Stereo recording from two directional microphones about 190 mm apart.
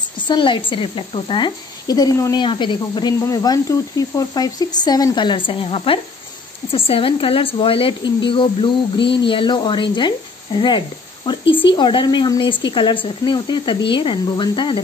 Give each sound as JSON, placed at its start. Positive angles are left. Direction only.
{"t": 0.3, "sound": "a woman's voice", "side_deg": 25}